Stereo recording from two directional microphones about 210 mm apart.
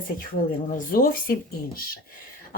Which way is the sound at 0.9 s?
45° left (ahead or behind).